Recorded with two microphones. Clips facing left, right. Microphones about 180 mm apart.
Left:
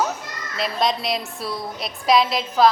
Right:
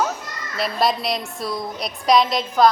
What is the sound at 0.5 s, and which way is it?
A woman's voice, 5° right (ahead or behind).